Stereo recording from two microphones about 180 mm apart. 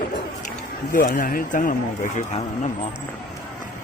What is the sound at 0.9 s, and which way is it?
Speech, 50° left (ahead or behind).